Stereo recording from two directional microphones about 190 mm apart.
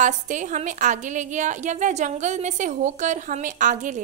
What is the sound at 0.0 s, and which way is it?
A woman's voice, 40° right (ahead or behind).